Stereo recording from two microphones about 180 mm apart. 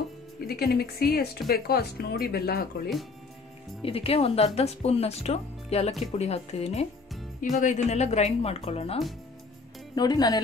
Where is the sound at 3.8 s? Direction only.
30° left (ahead or behind).